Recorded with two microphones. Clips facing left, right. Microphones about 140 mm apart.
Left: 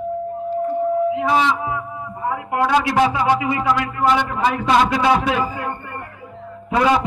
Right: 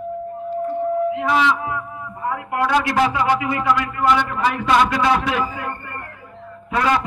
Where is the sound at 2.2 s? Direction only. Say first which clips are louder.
Left 2 dB; 20° left (ahead or behind).